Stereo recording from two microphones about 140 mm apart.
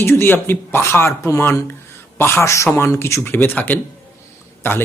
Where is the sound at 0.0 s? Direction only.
15° left (ahead or behind).